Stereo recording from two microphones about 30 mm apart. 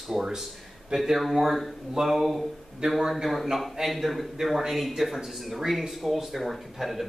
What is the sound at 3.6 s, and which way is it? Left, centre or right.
A man's voice, centre.